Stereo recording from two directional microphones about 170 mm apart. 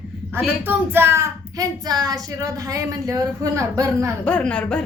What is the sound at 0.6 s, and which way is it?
Speech, 10° right (ahead or behind).